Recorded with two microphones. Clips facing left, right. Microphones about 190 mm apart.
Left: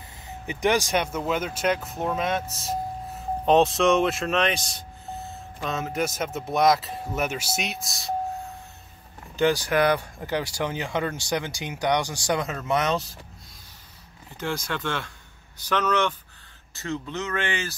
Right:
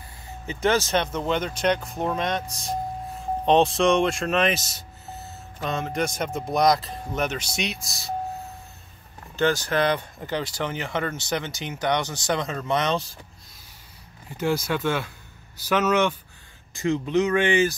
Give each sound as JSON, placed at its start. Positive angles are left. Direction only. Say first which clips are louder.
{"t": 0.5, "sound": "speech", "louder": "right 1 dB", "side_deg": 15}
{"t": 9.4, "sound": "speech", "louder": "left 1 dB", "side_deg": 15}
{"t": 14.3, "sound": "speech", "louder": "right 5 dB", "side_deg": -10}